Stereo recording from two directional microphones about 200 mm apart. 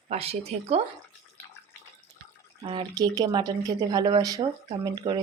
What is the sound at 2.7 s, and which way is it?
Speech, 25° right (ahead or behind).